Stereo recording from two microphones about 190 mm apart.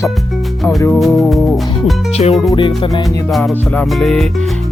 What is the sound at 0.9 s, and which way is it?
Speech, centre (ahead or behind).